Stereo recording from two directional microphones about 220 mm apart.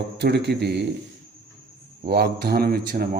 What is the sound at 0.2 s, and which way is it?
Speech, 50° right (ahead or behind).